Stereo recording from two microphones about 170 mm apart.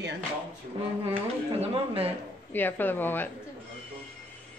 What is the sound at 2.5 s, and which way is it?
Speech, 10° left (ahead or behind).